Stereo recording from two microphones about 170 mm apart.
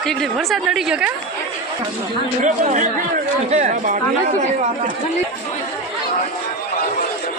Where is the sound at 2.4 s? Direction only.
45° right (ahead or behind).